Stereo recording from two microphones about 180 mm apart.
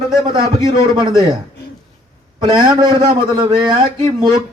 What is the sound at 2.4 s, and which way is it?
Speech, 20° right (ahead or behind).